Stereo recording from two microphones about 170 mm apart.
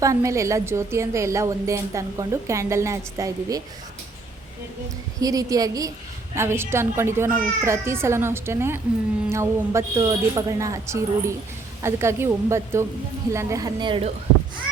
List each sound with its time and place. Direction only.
0.0 s a woman's voice: 20° right (ahead or behind)
5.2 s a woman's voice: 20° right (ahead or behind)